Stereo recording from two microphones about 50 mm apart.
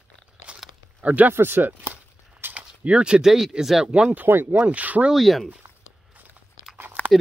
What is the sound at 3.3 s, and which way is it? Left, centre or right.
Speech, centre.